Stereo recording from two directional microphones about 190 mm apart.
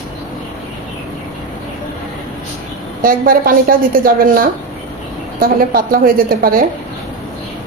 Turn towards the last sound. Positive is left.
turn(degrees=-50)  # may be behind; listen again after turning